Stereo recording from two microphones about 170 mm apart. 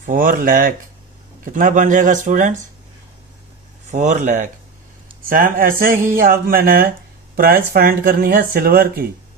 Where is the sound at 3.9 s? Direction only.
45° right (ahead or behind).